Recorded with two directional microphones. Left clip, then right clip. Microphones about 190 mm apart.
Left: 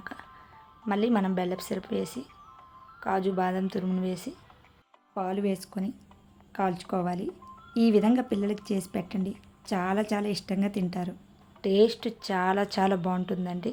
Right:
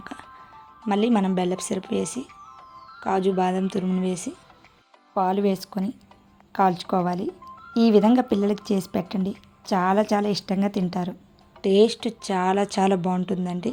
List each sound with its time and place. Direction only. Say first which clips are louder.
0.0 s music: right 3 dB; 25° right (ahead or behind)
0.9 s speech: right 5 dB; 25° right (ahead or behind)
2.2 s music: right 6 dB; 50° right (ahead or behind)
3.0 s a woman's voice: right 5 dB; 25° right (ahead or behind)